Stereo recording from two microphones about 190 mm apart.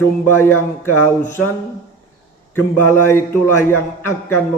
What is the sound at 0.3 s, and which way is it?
Speech, 10° left (ahead or behind).